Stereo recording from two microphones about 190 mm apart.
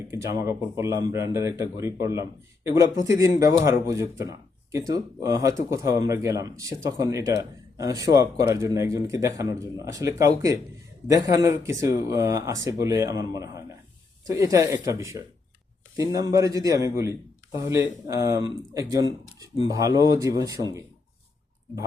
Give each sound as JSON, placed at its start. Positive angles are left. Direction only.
{"t": 0.1, "sound": "speech", "side_deg": -15}